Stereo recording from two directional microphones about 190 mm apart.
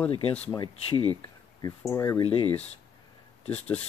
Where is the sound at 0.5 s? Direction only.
25° left (ahead or behind).